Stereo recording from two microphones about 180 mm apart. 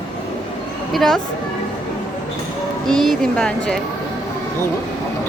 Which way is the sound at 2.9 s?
Centre (ahead or behind).